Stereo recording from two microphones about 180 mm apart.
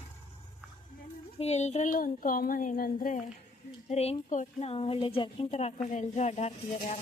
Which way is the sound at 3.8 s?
35° left (ahead or behind).